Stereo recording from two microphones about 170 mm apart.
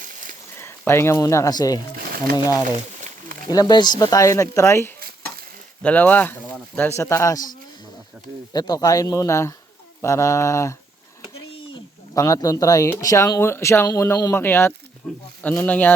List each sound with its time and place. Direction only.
0.0 s a sound: 50° right (ahead or behind)
0.6 s speech: 15° left (ahead or behind)
4.9 s stir: 65° right (ahead or behind)
5.8 s speech: 10° left (ahead or behind)
8.5 s speech: 25° left (ahead or behind)